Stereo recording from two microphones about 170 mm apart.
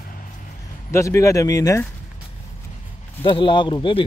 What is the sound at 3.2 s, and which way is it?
Speech, 30° left (ahead or behind).